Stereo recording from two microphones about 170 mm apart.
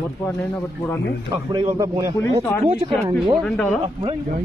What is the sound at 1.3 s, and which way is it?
Speech, 20° right (ahead or behind).